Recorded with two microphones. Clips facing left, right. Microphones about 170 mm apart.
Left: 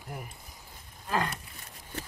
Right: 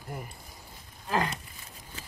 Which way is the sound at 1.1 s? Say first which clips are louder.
Right 1 dB; centre (ahead or behind).